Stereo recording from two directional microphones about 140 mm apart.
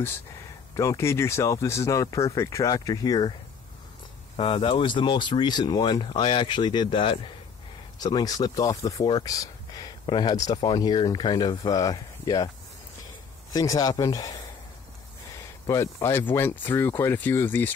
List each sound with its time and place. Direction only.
0.7 s speech: 20° left (ahead or behind)
4.4 s speech: 40° left (ahead or behind)
13.5 s speech: 25° left (ahead or behind)
15.6 s speech: 20° left (ahead or behind)